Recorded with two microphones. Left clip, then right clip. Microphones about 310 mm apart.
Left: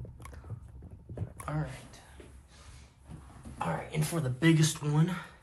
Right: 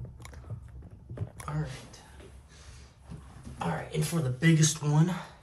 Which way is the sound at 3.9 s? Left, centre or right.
Centre.